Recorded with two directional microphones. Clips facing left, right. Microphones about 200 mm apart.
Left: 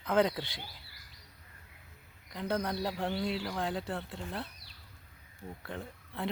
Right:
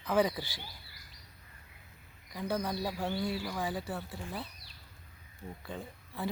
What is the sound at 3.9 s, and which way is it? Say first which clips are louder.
Speech: left 1 dB; 5° right (ahead or behind).